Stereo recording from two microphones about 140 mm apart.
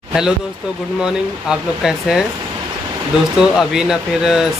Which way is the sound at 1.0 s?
5° right (ahead or behind).